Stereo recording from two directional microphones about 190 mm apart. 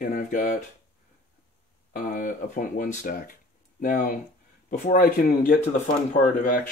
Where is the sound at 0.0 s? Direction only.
45° left (ahead or behind).